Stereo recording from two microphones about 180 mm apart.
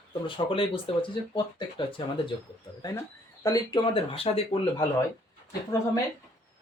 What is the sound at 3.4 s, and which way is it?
Speech, 20° left (ahead or behind).